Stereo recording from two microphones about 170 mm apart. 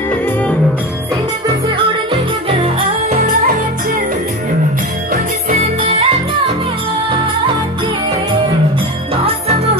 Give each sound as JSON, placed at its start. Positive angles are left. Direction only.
{"t": 2.5, "sound": "music", "side_deg": -35}
{"t": 5.1, "sound": "music", "side_deg": -40}
{"t": 9.1, "sound": "jingle bell", "side_deg": -35}